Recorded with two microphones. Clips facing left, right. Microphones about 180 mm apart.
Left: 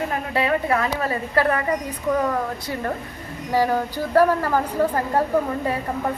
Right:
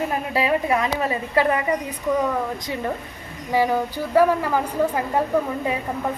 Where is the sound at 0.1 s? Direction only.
20° right (ahead or behind).